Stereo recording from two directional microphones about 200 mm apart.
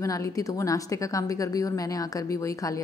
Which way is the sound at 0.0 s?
15° left (ahead or behind).